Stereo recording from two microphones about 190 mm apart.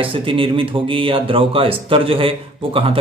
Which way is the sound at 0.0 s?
30° right (ahead or behind).